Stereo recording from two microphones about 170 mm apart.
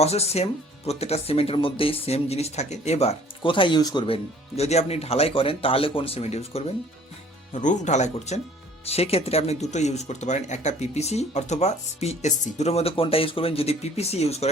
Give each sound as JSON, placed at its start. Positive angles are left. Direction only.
{"t": 0.0, "sound": "speech", "side_deg": 40}